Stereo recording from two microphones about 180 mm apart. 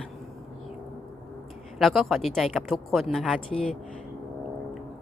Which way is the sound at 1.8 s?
Centre (ahead or behind).